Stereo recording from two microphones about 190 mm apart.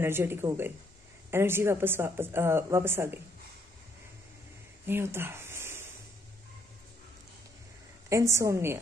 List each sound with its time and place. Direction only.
0.0 s a woman's voice: 10° right (ahead or behind)
4.8 s a sound: 10° right (ahead or behind)
8.1 s a woman's voice: 15° right (ahead or behind)